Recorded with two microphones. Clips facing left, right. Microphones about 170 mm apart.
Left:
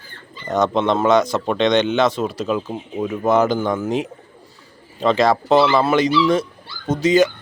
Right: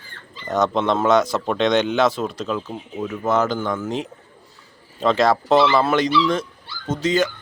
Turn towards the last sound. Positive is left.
turn(degrees=10)  # may be behind; listen again after turning